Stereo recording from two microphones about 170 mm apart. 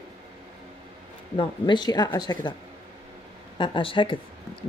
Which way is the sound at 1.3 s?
30° left (ahead or behind).